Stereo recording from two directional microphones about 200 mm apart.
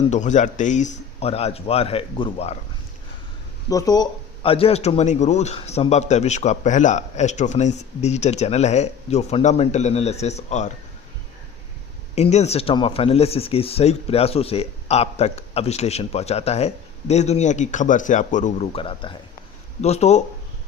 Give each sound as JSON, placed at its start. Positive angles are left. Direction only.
{"t": 0.1, "sound": "speech", "side_deg": 35}
{"t": 3.7, "sound": "speech", "side_deg": 20}
{"t": 12.1, "sound": "speech", "side_deg": 35}